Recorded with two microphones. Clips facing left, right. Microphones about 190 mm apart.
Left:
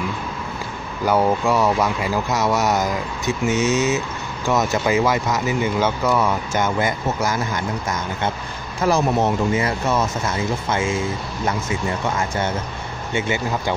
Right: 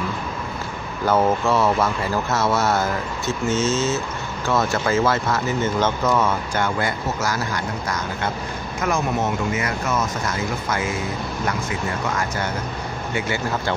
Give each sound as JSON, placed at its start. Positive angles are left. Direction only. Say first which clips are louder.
{"t": 1.0, "sound": "speech", "louder": "left 1 dB", "side_deg": 10}
{"t": 8.8, "sound": "speech", "louder": "left 4 dB", "side_deg": 35}
{"t": 13.1, "sound": "speech", "louder": "left 2 dB", "side_deg": 20}